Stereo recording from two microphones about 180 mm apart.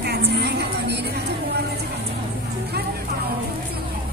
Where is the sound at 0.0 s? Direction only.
60° right (ahead or behind).